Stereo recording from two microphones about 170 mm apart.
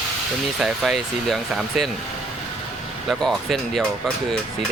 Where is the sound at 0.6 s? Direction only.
Centre (ahead or behind).